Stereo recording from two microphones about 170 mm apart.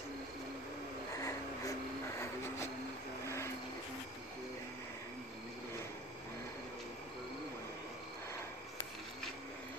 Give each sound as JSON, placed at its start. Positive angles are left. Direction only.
{"t": 1.2, "sound": "music", "side_deg": 15}